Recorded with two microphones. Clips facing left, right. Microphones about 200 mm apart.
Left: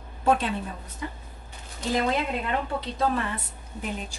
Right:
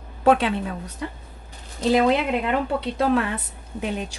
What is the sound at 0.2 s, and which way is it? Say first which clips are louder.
A woman's voice: right 5 dB; 75° right (ahead or behind).